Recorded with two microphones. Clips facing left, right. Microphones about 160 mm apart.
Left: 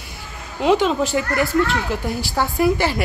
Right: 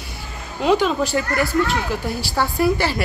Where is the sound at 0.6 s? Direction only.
20° left (ahead or behind).